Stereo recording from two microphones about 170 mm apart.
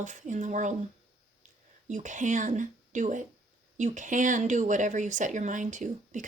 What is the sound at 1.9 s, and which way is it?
Speech, 45° right (ahead or behind).